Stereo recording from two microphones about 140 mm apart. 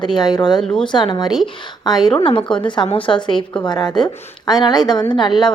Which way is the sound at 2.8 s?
40° left (ahead or behind).